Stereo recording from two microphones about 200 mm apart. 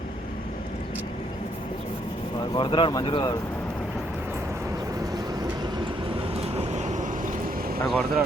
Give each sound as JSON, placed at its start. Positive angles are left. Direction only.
{"t": 2.6, "sound": "speech", "side_deg": 25}
{"t": 6.6, "sound": "vehicle", "side_deg": -35}
{"t": 7.9, "sound": "speech", "side_deg": 0}